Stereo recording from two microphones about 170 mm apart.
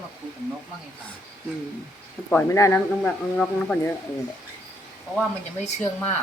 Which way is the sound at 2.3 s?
15° left (ahead or behind).